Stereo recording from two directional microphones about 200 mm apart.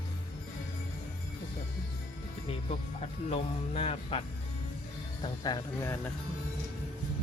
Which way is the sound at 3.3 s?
30° left (ahead or behind).